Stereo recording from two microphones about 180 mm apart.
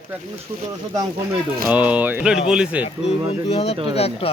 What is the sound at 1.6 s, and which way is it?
Speech, 10° right (ahead or behind).